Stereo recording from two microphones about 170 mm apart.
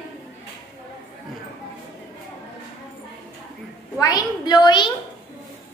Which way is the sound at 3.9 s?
25° left (ahead or behind).